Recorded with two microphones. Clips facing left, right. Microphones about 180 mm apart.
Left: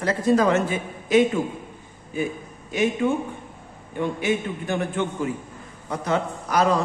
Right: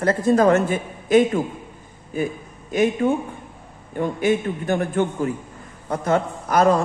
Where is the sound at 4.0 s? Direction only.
45° right (ahead or behind).